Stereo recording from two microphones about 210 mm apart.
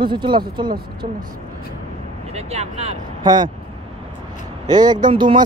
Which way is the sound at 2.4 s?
30° right (ahead or behind).